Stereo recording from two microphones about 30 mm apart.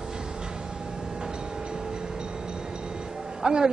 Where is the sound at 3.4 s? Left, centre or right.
Right.